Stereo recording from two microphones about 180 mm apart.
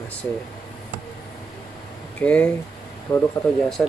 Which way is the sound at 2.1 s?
5° left (ahead or behind).